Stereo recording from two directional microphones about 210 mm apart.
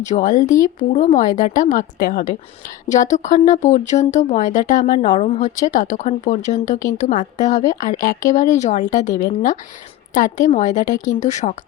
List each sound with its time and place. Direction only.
0.0 s speech: 35° left (ahead or behind)